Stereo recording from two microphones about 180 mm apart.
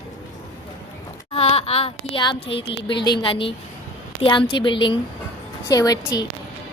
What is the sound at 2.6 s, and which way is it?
A woman's voice, 25° left (ahead or behind).